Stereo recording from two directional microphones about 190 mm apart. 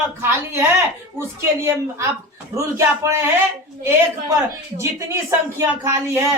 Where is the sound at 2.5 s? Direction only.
15° right (ahead or behind).